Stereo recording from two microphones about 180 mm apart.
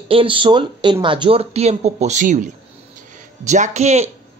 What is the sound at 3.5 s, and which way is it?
Speech, 40° right (ahead or behind).